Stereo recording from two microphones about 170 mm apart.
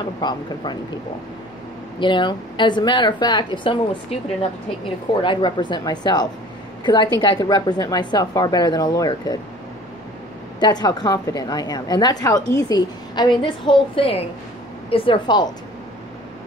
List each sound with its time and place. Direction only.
0.0 s speech: 25° left (ahead or behind)
2.0 s speech: 30° left (ahead or behind)
10.6 s speech: 25° left (ahead or behind)